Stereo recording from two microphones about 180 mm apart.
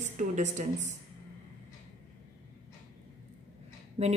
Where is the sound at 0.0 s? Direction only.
40° right (ahead or behind).